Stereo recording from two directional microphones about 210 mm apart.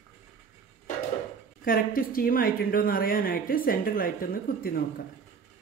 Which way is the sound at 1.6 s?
45° left (ahead or behind).